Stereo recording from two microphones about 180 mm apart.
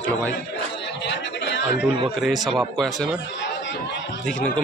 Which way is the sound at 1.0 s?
80° left.